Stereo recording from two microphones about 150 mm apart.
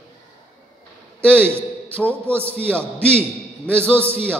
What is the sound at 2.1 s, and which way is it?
Speech, 15° right (ahead or behind).